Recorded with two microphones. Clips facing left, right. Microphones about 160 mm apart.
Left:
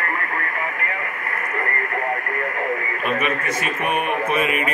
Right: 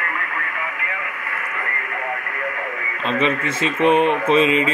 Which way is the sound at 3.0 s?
25° right (ahead or behind).